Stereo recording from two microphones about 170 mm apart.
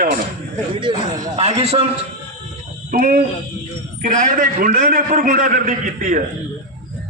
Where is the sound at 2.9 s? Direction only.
55° right (ahead or behind).